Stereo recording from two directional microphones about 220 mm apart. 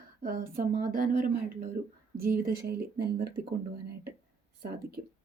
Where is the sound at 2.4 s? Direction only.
45° right (ahead or behind).